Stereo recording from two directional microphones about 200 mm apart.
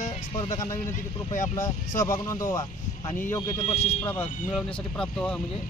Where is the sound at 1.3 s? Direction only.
40° left (ahead or behind).